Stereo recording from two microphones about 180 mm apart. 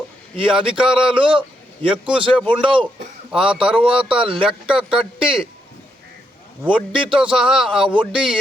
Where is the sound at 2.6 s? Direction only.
30° right (ahead or behind).